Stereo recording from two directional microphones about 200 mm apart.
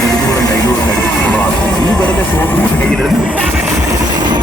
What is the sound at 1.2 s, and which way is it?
Music, 5° left (ahead or behind).